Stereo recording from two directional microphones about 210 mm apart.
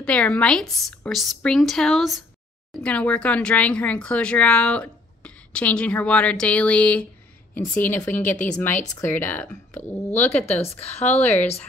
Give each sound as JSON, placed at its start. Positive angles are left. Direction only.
{"t": 0.0, "sound": "a woman's voice", "side_deg": 5}
{"t": 10.4, "sound": "a woman's voice", "side_deg": 30}
{"t": 11.1, "sound": "a woman's voice", "side_deg": 5}